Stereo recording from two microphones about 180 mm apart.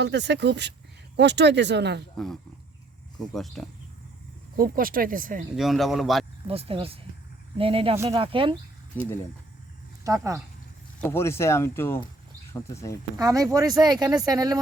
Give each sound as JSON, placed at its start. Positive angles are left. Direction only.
{"t": 0.0, "sound": "speech", "side_deg": -75}
{"t": 2.1, "sound": "speech", "side_deg": 0}
{"t": 4.5, "sound": "speech", "side_deg": -50}
{"t": 5.5, "sound": "speech", "side_deg": 0}
{"t": 6.5, "sound": "speech", "side_deg": -30}
{"t": 8.9, "sound": "speech", "side_deg": 10}
{"t": 10.0, "sound": "speech", "side_deg": -20}
{"t": 11.0, "sound": "speech", "side_deg": 15}
{"t": 13.1, "sound": "speech", "side_deg": -20}